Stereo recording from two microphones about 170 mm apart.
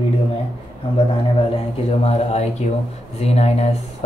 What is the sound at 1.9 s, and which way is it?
Speech, 40° left (ahead or behind).